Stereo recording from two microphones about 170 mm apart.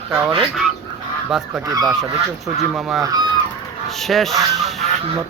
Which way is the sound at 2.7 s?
Centre (ahead or behind).